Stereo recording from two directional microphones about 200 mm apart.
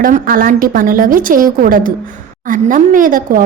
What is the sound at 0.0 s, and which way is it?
A woman's voice, 45° right (ahead or behind).